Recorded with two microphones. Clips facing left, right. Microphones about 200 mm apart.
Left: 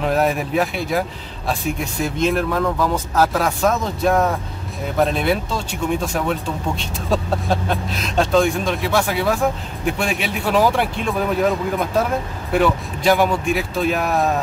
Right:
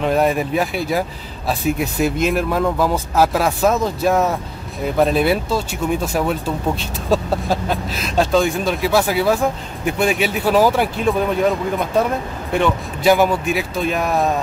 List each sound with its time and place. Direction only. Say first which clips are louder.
0.0 s speech: right 2 dB; centre (ahead or behind)
2.1 s speech: right 1 dB; 10° right (ahead or behind)
13.0 s speech: right 2 dB; 5° right (ahead or behind)